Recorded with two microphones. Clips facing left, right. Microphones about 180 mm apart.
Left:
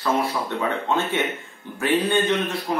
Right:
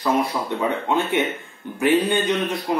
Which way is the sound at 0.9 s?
15° right (ahead or behind).